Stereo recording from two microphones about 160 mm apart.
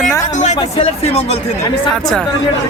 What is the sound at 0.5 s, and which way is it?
Speech, 25° left (ahead or behind).